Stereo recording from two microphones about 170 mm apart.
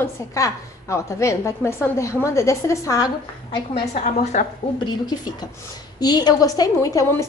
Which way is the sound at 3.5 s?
40° left (ahead or behind).